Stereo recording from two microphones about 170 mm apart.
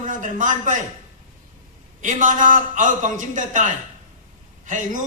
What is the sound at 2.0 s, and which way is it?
A man's voice, 50° right (ahead or behind).